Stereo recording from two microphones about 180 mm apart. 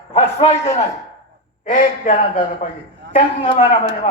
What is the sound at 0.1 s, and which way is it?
Speech, 35° left (ahead or behind).